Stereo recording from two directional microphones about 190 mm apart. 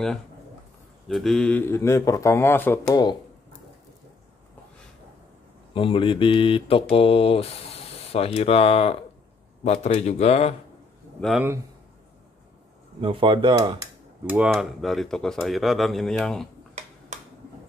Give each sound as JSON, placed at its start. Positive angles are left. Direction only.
{"t": 1.0, "sound": "speech", "side_deg": 0}
{"t": 5.8, "sound": "mantra", "side_deg": 30}
{"t": 11.1, "sound": "speech", "side_deg": 0}
{"t": 13.0, "sound": "speech", "side_deg": -25}
{"t": 14.3, "sound": "speech", "side_deg": -5}
{"t": 17.1, "sound": "a sound", "side_deg": -40}